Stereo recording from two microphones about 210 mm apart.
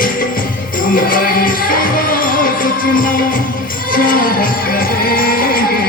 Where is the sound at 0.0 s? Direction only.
40° left (ahead or behind).